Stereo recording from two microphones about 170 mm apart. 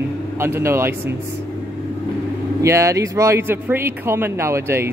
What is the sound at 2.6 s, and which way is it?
Speech, 20° right (ahead or behind).